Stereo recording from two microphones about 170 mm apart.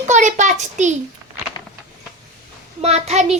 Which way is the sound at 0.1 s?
45° right (ahead or behind).